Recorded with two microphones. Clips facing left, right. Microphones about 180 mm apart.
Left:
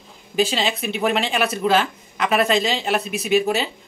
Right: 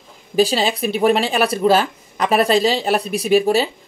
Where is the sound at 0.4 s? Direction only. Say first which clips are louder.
Right 4 dB; 35° right (ahead or behind).